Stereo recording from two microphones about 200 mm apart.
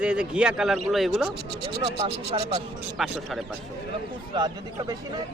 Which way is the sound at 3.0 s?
Centre (ahead or behind).